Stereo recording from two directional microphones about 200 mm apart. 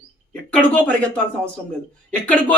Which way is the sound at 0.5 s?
5° left (ahead or behind).